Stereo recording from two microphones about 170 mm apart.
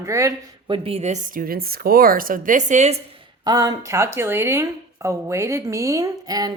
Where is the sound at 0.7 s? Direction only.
35° right (ahead or behind).